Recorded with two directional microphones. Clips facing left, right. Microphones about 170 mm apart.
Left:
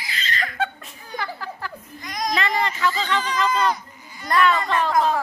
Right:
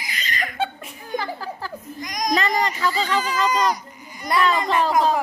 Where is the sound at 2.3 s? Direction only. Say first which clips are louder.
Right 3 dB; 40° right (ahead or behind).